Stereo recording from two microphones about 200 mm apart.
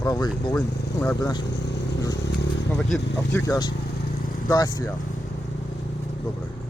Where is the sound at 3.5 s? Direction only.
20° left (ahead or behind).